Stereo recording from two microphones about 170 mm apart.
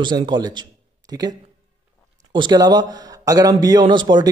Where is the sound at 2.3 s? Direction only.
25° right (ahead or behind).